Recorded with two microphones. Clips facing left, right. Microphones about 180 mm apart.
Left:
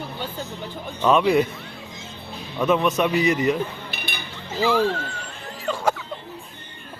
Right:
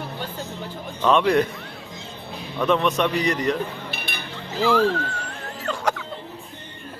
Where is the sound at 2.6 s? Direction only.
5° left (ahead or behind).